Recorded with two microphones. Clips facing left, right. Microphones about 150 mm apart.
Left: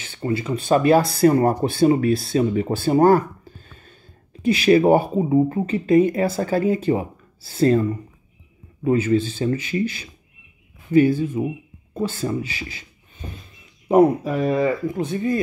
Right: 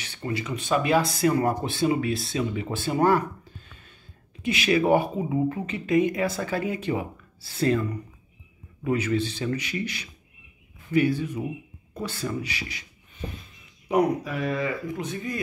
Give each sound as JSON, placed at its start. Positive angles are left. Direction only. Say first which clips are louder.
{"t": 0.2, "sound": "speech", "louder": "left 7 dB", "side_deg": 30}
{"t": 0.7, "sound": "speech", "louder": "left 7 dB", "side_deg": 45}
{"t": 13.8, "sound": "speech", "louder": "left 8 dB", "side_deg": 30}